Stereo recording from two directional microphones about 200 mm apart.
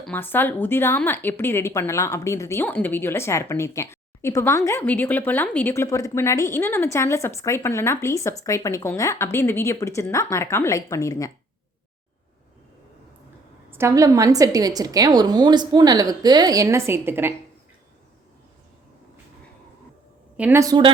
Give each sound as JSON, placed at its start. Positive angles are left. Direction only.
{"t": 0.0, "sound": "a woman's voice", "side_deg": 10}
{"t": 13.7, "sound": "a woman's voice", "side_deg": -15}
{"t": 20.3, "sound": "a woman's voice", "side_deg": -10}